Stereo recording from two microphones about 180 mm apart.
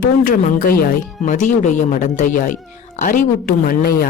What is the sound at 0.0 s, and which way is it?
Speech, 50° left (ahead or behind).